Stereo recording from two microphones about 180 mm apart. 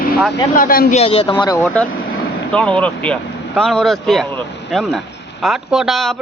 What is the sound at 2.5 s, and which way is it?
Speech, 5° left (ahead or behind).